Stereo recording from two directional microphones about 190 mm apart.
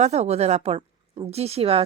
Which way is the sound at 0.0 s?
35° right (ahead or behind).